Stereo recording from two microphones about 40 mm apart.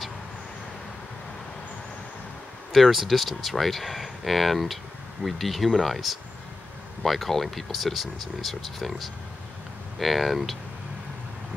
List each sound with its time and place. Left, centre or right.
2.7 s speech: centre